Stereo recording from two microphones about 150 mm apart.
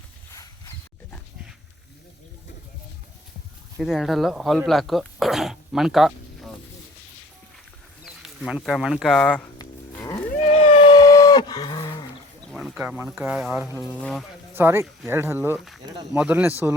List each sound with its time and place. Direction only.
0.3 s a sound: 20° left (ahead or behind)
3.8 s speech: centre (ahead or behind)
8.0 s speech: 5° right (ahead or behind)
10.2 s a sound: 50° left (ahead or behind); by 12.0 s 35° left (ahead or behind)
12.5 s a sound: centre (ahead or behind)
12.8 s speech: 10° right (ahead or behind)
14.0 s speech: 5° left (ahead or behind)
14.5 s speech: 15° right (ahead or behind)
15.5 s speech: centre (ahead or behind)